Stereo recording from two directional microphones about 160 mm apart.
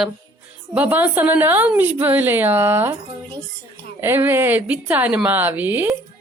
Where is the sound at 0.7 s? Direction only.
10° right (ahead or behind).